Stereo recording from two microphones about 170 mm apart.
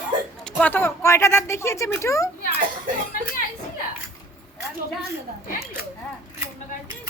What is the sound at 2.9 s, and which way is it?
Speech, 50° right (ahead or behind).